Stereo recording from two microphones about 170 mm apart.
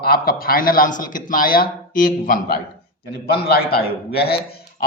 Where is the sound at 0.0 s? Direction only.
60° left (ahead or behind).